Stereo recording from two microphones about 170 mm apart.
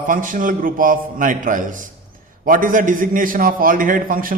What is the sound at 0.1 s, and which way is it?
A man's voice, 50° right (ahead or behind).